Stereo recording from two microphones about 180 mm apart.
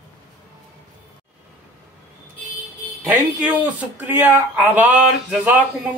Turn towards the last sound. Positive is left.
turn(degrees=-10)  # may be behind; listen again after turning